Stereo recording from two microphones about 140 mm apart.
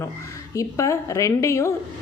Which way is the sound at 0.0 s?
25° left (ahead or behind).